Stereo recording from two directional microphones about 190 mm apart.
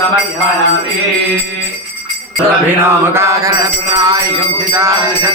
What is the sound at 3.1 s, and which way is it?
Mantra, 15° right (ahead or behind).